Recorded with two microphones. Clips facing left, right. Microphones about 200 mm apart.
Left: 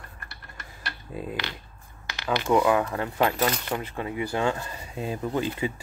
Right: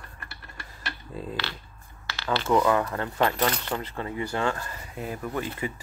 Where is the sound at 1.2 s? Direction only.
15° left (ahead or behind).